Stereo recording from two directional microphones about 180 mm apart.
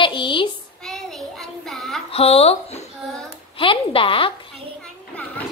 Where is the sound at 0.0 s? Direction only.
25° left (ahead or behind).